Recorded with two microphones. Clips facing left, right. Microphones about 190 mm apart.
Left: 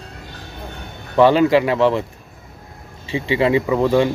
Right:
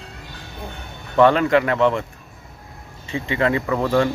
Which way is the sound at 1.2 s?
30° left (ahead or behind).